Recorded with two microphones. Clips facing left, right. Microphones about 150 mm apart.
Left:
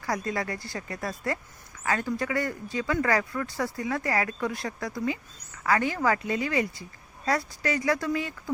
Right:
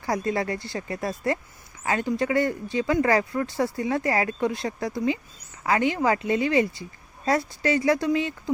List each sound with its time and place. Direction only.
0.0 s speech: 25° right (ahead or behind)